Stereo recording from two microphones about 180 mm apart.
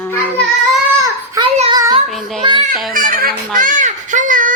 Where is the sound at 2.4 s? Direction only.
30° right (ahead or behind).